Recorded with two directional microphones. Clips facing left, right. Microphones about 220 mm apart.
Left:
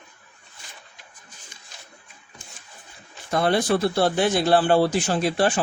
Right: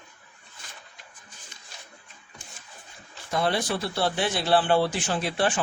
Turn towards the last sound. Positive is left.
turn(degrees=40)  # may be behind; listen again after turning